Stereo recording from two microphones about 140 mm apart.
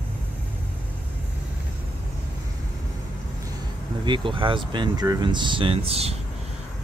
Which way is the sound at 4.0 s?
35° right (ahead or behind).